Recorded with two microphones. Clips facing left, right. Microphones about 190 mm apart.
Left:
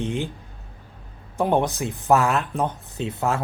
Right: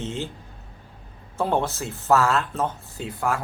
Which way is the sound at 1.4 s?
15° left (ahead or behind).